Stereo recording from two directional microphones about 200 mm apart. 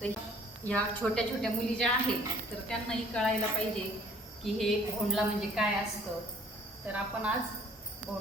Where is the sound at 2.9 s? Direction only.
5° left (ahead or behind).